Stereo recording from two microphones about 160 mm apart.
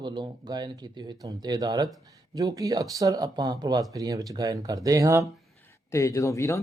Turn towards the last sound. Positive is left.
turn(degrees=20)  # may be behind; listen again after turning